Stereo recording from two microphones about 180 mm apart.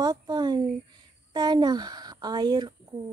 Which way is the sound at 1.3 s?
25° right (ahead or behind).